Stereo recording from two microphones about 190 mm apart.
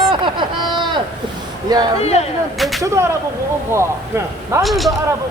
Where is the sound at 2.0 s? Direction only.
35° left (ahead or behind).